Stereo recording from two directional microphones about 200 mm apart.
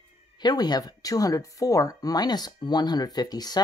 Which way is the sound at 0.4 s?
20° left (ahead or behind).